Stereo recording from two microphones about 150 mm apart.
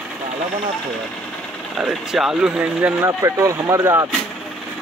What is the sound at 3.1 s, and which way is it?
Speech, 20° right (ahead or behind).